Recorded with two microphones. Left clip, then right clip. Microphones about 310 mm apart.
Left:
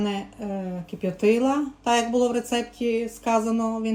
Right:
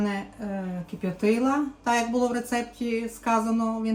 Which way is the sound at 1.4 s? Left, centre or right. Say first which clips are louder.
Left 2 dB; centre.